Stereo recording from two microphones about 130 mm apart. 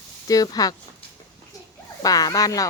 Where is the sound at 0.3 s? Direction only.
30° left (ahead or behind).